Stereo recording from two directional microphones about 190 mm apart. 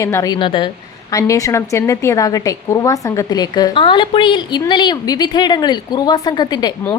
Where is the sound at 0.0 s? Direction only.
15° left (ahead or behind).